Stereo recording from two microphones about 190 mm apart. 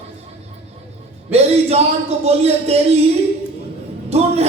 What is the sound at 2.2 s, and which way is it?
Speech, 35° right (ahead or behind).